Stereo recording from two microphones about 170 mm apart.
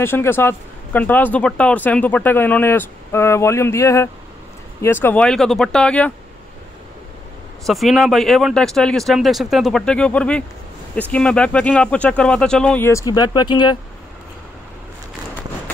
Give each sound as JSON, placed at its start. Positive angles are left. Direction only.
{"t": 0.0, "sound": "speech", "side_deg": 15}
{"t": 7.6, "sound": "speech", "side_deg": 0}